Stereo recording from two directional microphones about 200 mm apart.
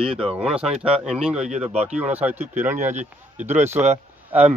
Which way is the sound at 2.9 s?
35° right (ahead or behind).